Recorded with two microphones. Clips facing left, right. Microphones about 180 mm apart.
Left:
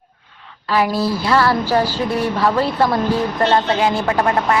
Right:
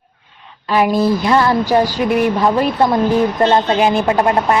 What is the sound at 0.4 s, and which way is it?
A woman's voice, 20° right (ahead or behind).